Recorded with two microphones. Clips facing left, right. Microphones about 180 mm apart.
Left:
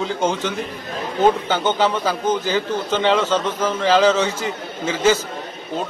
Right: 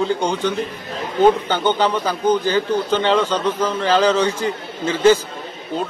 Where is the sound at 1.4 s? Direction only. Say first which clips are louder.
Right 1 dB; 10° left (ahead or behind).